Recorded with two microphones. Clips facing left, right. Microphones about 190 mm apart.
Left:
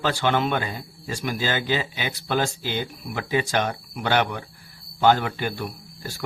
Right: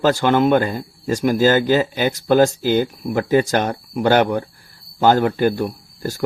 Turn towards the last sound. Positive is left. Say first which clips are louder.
# right 10 dB
turn(degrees=-40)  # may be behind; listen again after turning